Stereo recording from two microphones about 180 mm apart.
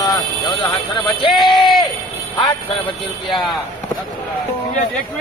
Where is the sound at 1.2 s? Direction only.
25° left (ahead or behind).